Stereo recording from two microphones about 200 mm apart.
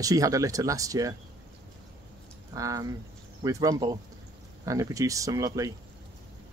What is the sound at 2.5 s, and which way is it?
Speech, 15° right (ahead or behind).